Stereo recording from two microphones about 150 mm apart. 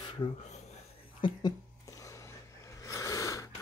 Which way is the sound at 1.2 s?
30° left (ahead or behind).